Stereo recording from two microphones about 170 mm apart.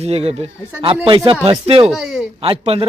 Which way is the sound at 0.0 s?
35° right (ahead or behind).